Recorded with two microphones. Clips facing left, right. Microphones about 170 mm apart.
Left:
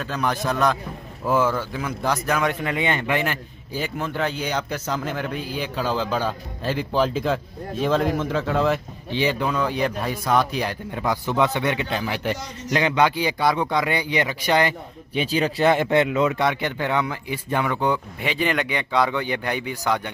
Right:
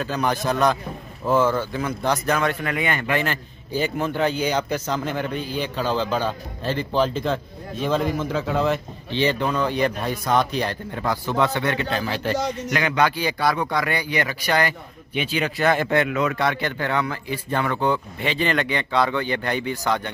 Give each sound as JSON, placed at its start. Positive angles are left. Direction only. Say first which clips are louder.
{"t": 0.0, "sound": "speech", "louder": "right 1 dB", "side_deg": 0}
{"t": 2.6, "sound": "speech", "louder": "left 1 dB", "side_deg": 20}
{"t": 3.7, "sound": "speech", "louder": "right 3 dB", "side_deg": 0}
{"t": 15.1, "sound": "speech", "louder": "left 2 dB", "side_deg": 35}
{"t": 15.7, "sound": "speech", "louder": "left 2 dB", "side_deg": 20}